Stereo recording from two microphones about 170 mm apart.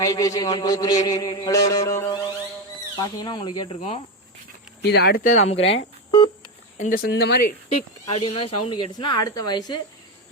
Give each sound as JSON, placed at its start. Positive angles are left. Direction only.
{"t": 0.0, "sound": "speech", "side_deg": 20}
{"t": 4.8, "sound": "speech", "side_deg": 75}
{"t": 5.2, "sound": "speech", "side_deg": 45}
{"t": 5.5, "sound": "speech", "side_deg": 90}
{"t": 6.1, "sound": "a sound", "side_deg": 25}
{"t": 6.7, "sound": "speech", "side_deg": 50}
{"t": 8.0, "sound": "speech", "side_deg": 35}